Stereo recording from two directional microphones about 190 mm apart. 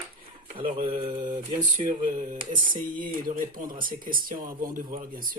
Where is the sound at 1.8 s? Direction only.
40° right (ahead or behind).